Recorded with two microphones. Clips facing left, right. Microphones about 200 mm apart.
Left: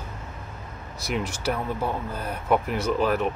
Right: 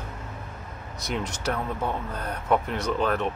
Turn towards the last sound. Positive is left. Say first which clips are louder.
# left 2 dB
turn(degrees=5)  # may be behind; listen again after turning